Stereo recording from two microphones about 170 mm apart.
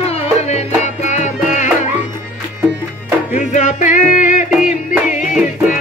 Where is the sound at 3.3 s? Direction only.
45° left (ahead or behind).